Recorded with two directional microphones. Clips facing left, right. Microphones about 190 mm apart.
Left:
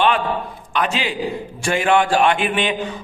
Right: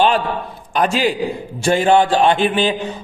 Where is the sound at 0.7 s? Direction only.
40° right (ahead or behind).